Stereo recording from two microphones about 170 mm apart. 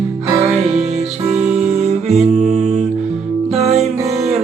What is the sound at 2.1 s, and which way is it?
Music, 40° right (ahead or behind).